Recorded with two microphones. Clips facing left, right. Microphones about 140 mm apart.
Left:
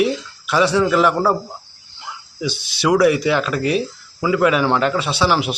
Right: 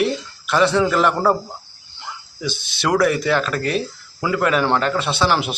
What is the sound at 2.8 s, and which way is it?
A man's voice, 5° left (ahead or behind).